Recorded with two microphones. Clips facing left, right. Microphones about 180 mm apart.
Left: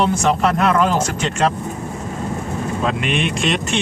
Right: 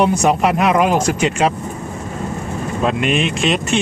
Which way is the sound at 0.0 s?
15° right (ahead or behind).